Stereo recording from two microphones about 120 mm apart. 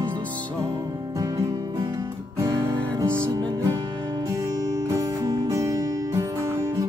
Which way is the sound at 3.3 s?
40° right (ahead or behind).